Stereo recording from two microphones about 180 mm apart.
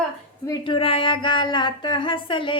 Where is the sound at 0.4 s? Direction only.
25° left (ahead or behind).